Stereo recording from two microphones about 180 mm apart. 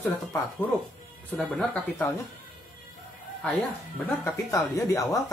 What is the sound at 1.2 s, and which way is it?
Speech, 10° left (ahead or behind).